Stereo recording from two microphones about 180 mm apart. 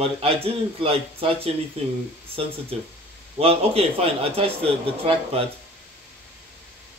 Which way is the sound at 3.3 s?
35° right (ahead or behind).